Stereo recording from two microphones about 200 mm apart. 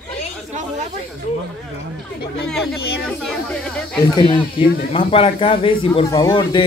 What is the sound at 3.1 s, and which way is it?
Speech, 5° left (ahead or behind).